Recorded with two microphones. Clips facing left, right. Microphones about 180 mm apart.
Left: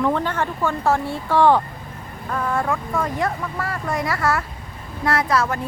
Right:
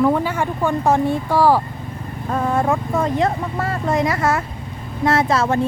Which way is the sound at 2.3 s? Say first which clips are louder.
Right 4 dB; 25° right (ahead or behind).